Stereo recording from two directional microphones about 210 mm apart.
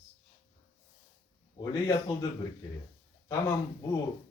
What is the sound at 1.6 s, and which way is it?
Speech, 20° left (ahead or behind).